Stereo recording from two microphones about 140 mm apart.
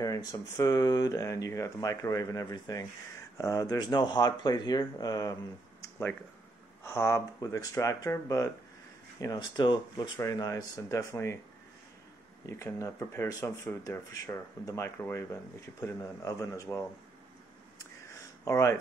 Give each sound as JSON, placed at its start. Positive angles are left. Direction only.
{"t": 0.0, "sound": "speech", "side_deg": 25}
{"t": 5.8, "sound": "a sound", "side_deg": 15}
{"t": 6.8, "sound": "speech", "side_deg": 20}
{"t": 12.4, "sound": "speech", "side_deg": 20}
{"t": 18.4, "sound": "speech", "side_deg": 20}